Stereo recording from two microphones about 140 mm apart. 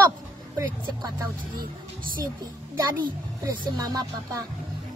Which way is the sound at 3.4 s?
30° right (ahead or behind).